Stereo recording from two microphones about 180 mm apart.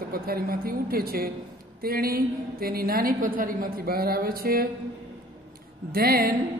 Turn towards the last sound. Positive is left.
turn(degrees=-55)  # may be behind; listen again after turning